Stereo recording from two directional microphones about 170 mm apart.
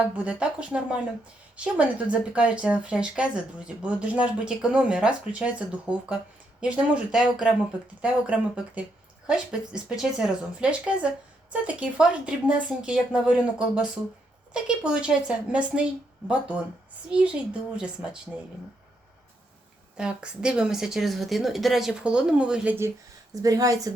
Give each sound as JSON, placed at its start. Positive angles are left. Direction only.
{"t": 0.2, "sound": "a woman's voice", "side_deg": -5}
{"t": 17.1, "sound": "speech", "side_deg": -5}
{"t": 20.0, "sound": "a woman's voice", "side_deg": -5}
{"t": 23.3, "sound": "a woman's voice", "side_deg": -20}